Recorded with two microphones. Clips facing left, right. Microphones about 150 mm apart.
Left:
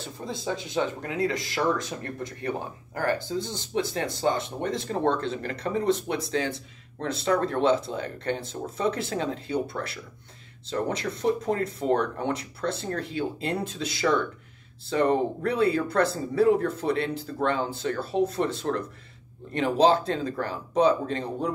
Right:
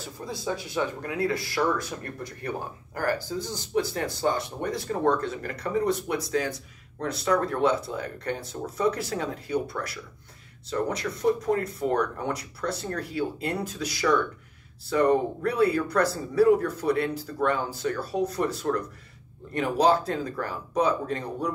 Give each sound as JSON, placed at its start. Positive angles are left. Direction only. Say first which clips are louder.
{"t": 0.0, "sound": "speech", "louder": "even", "side_deg": 25}